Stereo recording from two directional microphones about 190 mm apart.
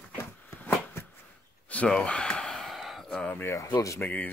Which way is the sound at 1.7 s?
5° left (ahead or behind).